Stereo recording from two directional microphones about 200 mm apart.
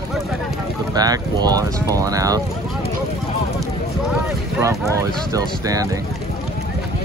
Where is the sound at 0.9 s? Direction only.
20° right (ahead or behind).